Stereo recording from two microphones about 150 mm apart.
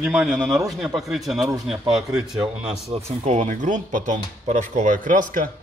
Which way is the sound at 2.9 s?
50° right (ahead or behind).